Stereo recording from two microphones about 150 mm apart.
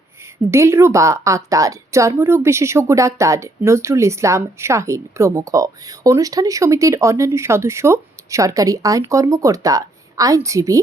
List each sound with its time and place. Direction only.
0.5 s a woman's voice: 15° right (ahead or behind)